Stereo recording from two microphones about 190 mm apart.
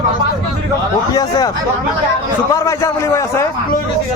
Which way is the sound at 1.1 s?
20° left (ahead or behind).